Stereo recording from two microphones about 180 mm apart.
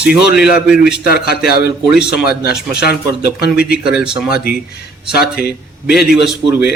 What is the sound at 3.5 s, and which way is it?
Speech, 60° left (ahead or behind).